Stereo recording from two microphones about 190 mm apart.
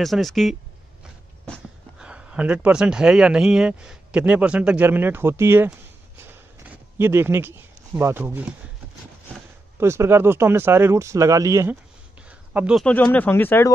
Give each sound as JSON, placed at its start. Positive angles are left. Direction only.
{"t": 0.0, "sound": "speech", "side_deg": 0}
{"t": 7.0, "sound": "speech", "side_deg": -10}
{"t": 9.8, "sound": "speech", "side_deg": -15}
{"t": 12.2, "sound": "a sound", "side_deg": -5}
{"t": 12.8, "sound": "speech", "side_deg": 10}